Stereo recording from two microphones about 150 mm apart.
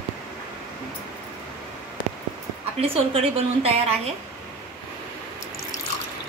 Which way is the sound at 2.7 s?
40° right (ahead or behind).